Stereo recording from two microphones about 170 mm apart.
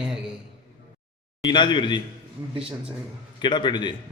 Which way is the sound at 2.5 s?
35° right (ahead or behind).